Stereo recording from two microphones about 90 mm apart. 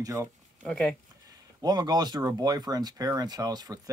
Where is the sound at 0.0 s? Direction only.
40° right (ahead or behind).